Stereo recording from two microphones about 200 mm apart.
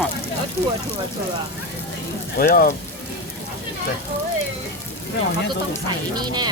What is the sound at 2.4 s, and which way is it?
Speech, 45° left (ahead or behind).